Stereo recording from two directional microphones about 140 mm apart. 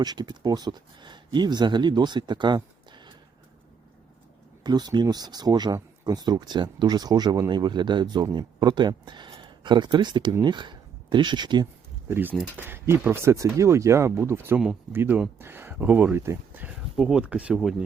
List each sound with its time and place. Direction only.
0.0 s speech: 30° right (ahead or behind)
4.6 s speech: 30° right (ahead or behind)
12.0 s speech: 15° right (ahead or behind)